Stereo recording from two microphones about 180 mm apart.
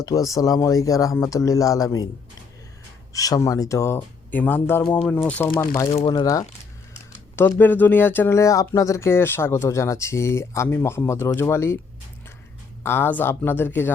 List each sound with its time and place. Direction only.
0.0 s speech: 20° left (ahead or behind)
3.1 s speech: 20° left (ahead or behind)
5.9 s speech: 30° left (ahead or behind)
6.9 s a sound: 10° left (ahead or behind)
7.6 s speech: 10° left (ahead or behind)
12.8 s speech: 10° left (ahead or behind)